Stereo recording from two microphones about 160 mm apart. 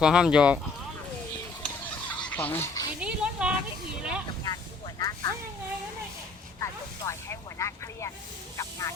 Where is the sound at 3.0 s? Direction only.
5° right (ahead or behind).